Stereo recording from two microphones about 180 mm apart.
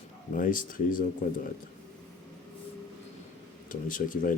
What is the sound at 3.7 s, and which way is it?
Speech, 50° left (ahead or behind).